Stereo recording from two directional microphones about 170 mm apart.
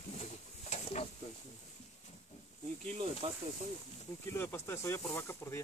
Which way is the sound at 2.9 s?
30° right (ahead or behind).